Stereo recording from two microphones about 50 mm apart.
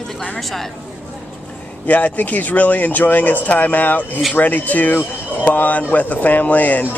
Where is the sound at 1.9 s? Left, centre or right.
Left.